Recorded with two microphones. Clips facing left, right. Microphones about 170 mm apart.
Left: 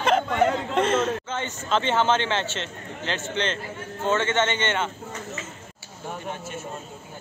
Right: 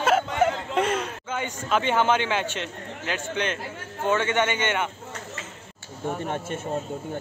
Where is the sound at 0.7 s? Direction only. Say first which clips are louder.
Left 4 dB; 10° right (ahead or behind).